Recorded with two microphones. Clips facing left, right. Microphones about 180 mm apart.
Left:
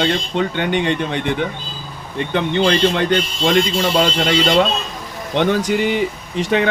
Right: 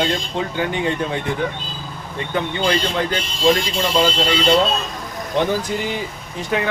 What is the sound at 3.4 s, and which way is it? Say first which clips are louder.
Speech: right 1 dB; 70° left (ahead or behind).